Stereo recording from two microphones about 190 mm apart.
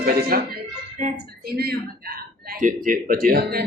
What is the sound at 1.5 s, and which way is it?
Speech, 55° right (ahead or behind).